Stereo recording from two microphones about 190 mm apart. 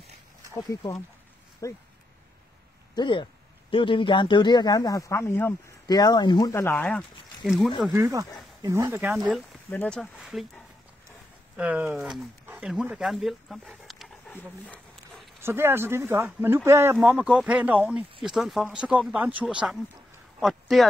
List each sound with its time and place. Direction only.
0.6 s speech: 20° left (ahead or behind)
2.9 s speech: 25° left (ahead or behind); by 7.7 s centre (ahead or behind)
7.9 s speech: 15° right (ahead or behind); by 14.3 s centre (ahead or behind)
15.4 s speech: 10° right (ahead or behind)